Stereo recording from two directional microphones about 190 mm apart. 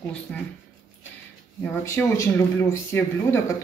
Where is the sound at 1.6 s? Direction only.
15° left (ahead or behind).